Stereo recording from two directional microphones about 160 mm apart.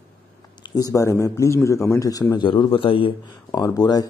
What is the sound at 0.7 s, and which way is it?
A man's voice, 20° left (ahead or behind).